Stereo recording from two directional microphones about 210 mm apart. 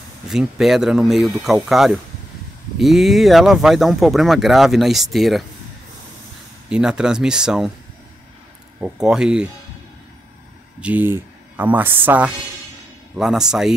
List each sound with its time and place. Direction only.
0.3 s speech: centre (ahead or behind)
6.7 s speech: 5° right (ahead or behind)
8.7 s speech: 5° right (ahead or behind)
10.8 s speech: 10° right (ahead or behind)